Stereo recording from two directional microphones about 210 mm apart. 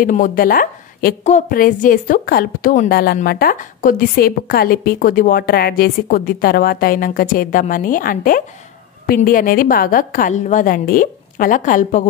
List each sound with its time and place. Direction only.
0.0 s a woman's voice: 40° left (ahead or behind)